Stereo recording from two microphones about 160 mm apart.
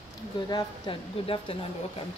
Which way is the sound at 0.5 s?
25° left (ahead or behind).